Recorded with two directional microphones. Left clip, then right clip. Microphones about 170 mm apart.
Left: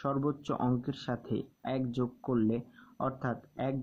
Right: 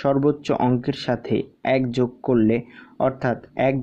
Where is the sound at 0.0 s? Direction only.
20° right (ahead or behind).